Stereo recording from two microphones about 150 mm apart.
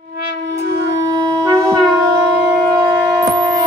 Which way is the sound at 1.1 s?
25° right (ahead or behind).